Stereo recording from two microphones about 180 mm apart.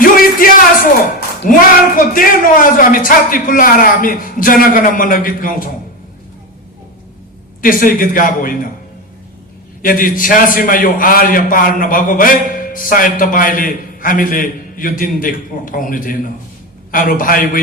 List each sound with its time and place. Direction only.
0.0 s music: 50° left (ahead or behind)
1.4 s a man's voice: 50° left (ahead or behind)
7.6 s a man's voice: 50° left (ahead or behind)
9.8 s a man's voice: 50° left (ahead or behind)